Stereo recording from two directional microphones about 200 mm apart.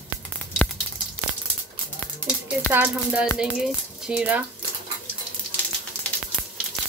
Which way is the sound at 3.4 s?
Centre (ahead or behind).